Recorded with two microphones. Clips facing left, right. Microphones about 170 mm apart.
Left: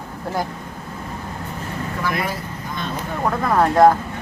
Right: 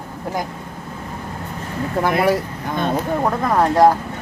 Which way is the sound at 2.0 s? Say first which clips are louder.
Right 9 dB; 65° right (ahead or behind).